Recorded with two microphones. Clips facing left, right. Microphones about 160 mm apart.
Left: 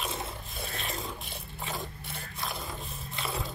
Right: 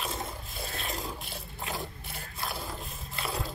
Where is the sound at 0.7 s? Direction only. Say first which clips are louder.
Right 1 dB; centre (ahead or behind).